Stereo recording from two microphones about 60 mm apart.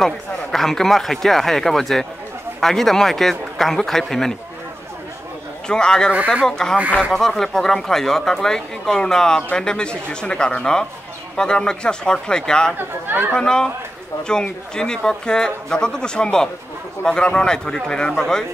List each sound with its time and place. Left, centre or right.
0.0 s speech: centre
5.7 s speech: centre
6.1 s speech: right
6.4 s speech: centre
12.7 s speech: right
13.3 s speech: centre